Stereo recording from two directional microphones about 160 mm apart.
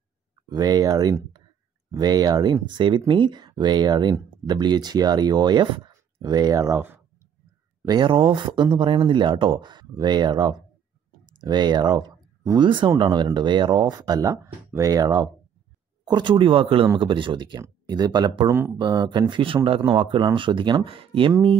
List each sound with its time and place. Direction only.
0.5 s speech: 25° right (ahead or behind)
7.8 s speech: 25° right (ahead or behind)